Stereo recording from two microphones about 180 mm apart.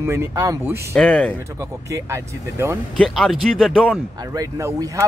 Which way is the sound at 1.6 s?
15° right (ahead or behind).